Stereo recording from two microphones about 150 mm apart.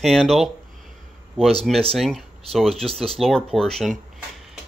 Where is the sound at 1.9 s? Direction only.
Centre (ahead or behind).